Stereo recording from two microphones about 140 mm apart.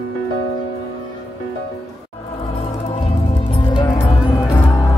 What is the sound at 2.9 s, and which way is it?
Music, 45° left (ahead or behind).